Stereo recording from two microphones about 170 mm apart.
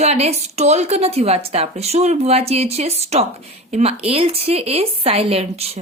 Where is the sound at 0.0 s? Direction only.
40° right (ahead or behind).